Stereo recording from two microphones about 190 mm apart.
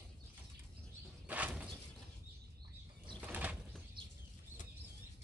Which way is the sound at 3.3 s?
5° right (ahead or behind).